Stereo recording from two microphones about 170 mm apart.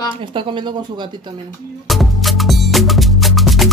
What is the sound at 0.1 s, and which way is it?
Speech, 30° right (ahead or behind).